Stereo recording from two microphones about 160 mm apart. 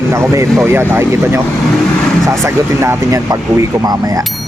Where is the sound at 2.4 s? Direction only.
15° right (ahead or behind).